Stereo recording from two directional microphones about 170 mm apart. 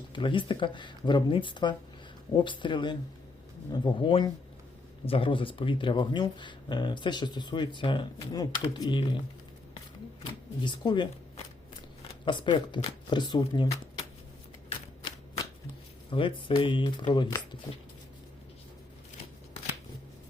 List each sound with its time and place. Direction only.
0.1 s speech: 30° left (ahead or behind)
10.6 s speech: 25° left (ahead or behind)
12.2 s speech: 30° left (ahead or behind)
14.7 s a sound: 30° left (ahead or behind)
16.0 s speech: 30° left (ahead or behind)